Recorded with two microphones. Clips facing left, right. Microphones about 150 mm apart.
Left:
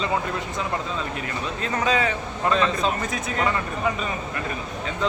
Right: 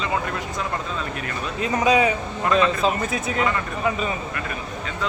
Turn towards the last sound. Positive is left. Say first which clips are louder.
# right 2 dB
turn(degrees=-5)  # may be behind; listen again after turning